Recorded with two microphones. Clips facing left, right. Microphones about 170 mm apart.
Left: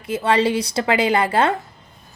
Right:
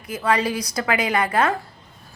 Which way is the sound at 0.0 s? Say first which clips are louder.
Left 4 dB; 25° left (ahead or behind).